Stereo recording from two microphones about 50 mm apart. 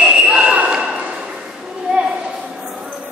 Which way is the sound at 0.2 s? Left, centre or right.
Centre.